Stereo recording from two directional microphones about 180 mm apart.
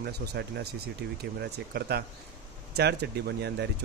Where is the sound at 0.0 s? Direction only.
65° right (ahead or behind).